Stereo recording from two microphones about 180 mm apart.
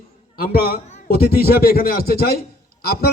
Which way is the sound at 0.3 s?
55° left (ahead or behind).